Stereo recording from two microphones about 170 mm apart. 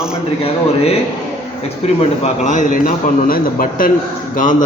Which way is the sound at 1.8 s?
40° left (ahead or behind).